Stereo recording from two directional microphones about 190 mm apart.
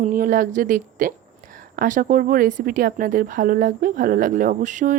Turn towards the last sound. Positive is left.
turn(degrees=-40)  # may be behind; listen again after turning